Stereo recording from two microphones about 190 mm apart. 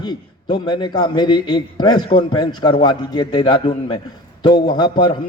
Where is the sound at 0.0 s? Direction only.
25° left (ahead or behind).